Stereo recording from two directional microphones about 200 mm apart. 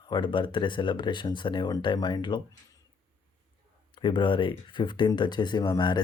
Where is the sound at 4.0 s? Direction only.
25° left (ahead or behind).